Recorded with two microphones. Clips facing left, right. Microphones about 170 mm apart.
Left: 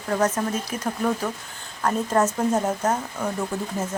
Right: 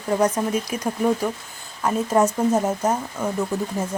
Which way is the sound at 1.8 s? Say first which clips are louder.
Right 2 dB; 10° right (ahead or behind).